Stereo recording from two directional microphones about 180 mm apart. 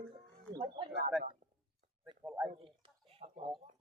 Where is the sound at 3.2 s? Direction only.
30° right (ahead or behind).